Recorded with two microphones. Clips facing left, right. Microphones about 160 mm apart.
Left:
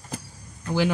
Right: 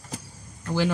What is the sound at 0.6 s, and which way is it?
Speech, 15° left (ahead or behind).